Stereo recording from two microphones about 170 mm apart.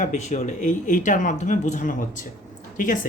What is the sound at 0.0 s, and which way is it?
Speech, 45° left (ahead or behind).